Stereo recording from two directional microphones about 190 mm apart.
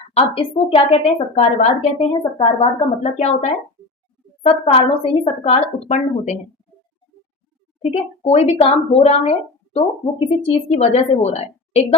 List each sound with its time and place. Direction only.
0.1 s a woman's voice: 30° left (ahead or behind)
7.8 s a woman's voice: 30° left (ahead or behind)